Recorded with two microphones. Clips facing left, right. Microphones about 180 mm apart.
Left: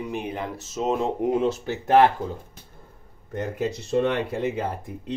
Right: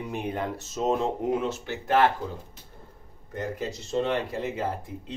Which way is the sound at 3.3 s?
60° left (ahead or behind).